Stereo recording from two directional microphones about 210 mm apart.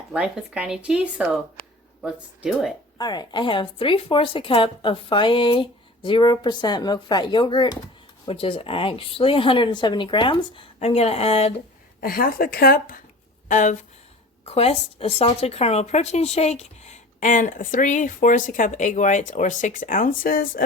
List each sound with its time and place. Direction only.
0.1 s speech: 5° right (ahead or behind)
1.6 s a sound: 45° left (ahead or behind)
2.0 s speech: 5° right (ahead or behind)
3.0 s speech: 20° left (ahead or behind)
11.9 s speech: 45° left (ahead or behind)